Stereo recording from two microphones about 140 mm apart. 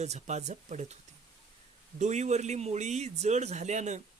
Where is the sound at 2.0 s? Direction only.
55° right (ahead or behind).